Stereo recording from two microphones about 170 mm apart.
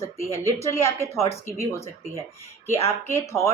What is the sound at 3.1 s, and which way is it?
Speech, 15° left (ahead or behind).